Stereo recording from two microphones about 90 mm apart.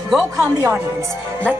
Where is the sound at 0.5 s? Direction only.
35° right (ahead or behind).